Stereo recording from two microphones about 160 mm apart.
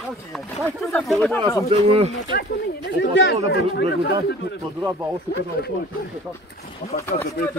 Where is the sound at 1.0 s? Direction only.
5° left (ahead or behind).